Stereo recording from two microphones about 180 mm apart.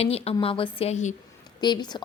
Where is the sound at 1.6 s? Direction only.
25° left (ahead or behind).